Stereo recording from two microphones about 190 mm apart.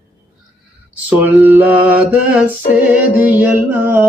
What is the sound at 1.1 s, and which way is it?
Mantra, 10° right (ahead or behind).